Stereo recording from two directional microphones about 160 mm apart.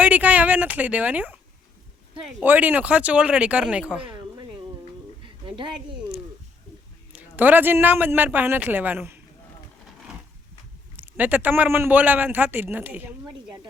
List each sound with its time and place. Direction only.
0.0 s a man's voice: 10° right (ahead or behind)
2.4 s a man's voice: 10° right (ahead or behind)
5.2 s a sound: 30° right (ahead or behind)
6.0 s a sound: 5° right (ahead or behind)
7.1 s a man's voice: 10° right (ahead or behind)
10.9 s a man's voice: 10° right (ahead or behind)